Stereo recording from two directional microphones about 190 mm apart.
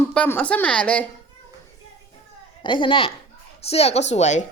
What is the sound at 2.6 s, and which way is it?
A child's voice, 25° left (ahead or behind).